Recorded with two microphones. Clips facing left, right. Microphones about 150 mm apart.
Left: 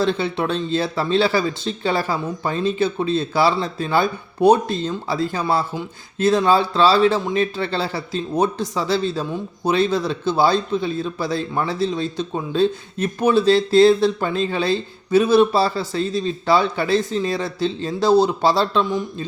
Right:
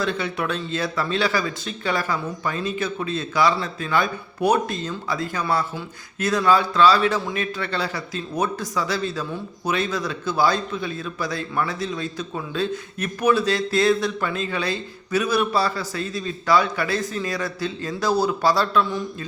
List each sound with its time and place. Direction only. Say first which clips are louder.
0.0 s speech: left 5 dB; 30° left (ahead or behind)